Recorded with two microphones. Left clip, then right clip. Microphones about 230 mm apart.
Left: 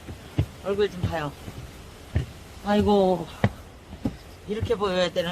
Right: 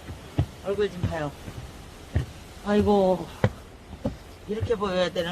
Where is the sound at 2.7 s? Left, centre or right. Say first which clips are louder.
Even; centre.